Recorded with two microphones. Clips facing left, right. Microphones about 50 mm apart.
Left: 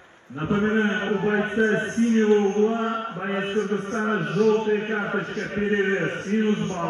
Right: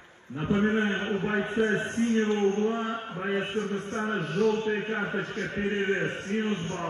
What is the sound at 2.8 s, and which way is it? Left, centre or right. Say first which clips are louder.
Mantra: left 6 dB; left.